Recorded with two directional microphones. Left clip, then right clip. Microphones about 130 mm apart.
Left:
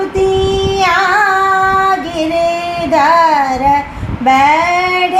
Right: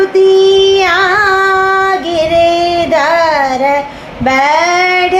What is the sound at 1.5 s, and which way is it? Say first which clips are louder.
Child singing: right 1 dB; 25° right (ahead or behind).